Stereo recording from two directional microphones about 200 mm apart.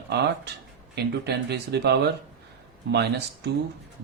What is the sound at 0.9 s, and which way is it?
Speech, 55° right (ahead or behind).